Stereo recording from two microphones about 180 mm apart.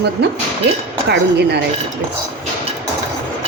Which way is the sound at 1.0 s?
65° right (ahead or behind).